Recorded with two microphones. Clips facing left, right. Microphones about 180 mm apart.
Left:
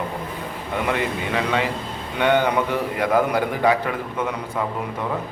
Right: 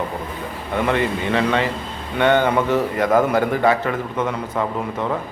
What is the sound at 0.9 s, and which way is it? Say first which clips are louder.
A man's voice: right 4 dB; 10° left (ahead or behind).